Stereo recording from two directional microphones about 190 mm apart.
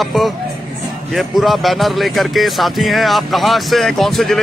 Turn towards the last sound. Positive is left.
turn(degrees=0)  # may be behind; listen again after turning